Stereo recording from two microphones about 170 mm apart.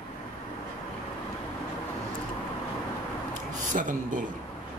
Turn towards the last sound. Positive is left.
turn(degrees=-50)  # may be behind; listen again after turning